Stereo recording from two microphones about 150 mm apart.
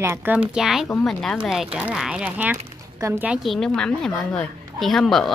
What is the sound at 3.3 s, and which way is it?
A woman's voice, centre (ahead or behind).